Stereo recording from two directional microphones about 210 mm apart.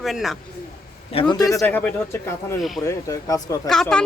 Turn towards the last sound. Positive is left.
turn(degrees=0)  # may be behind; listen again after turning